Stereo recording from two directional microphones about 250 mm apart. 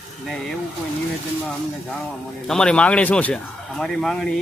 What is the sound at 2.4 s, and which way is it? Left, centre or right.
Speech, centre.